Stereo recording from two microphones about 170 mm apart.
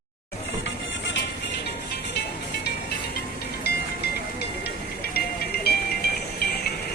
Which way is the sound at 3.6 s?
70° left (ahead or behind).